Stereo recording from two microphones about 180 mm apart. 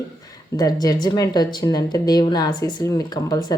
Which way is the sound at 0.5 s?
20° left (ahead or behind).